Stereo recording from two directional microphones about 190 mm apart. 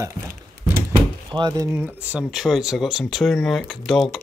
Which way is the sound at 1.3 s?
20° right (ahead or behind).